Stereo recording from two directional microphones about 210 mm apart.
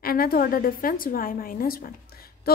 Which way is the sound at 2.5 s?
45° left (ahead or behind).